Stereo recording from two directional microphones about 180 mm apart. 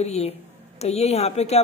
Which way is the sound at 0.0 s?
35° left (ahead or behind).